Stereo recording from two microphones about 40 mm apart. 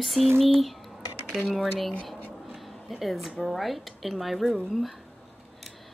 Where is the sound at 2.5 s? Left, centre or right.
Centre.